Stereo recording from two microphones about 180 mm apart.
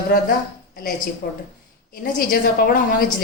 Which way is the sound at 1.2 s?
55° left (ahead or behind).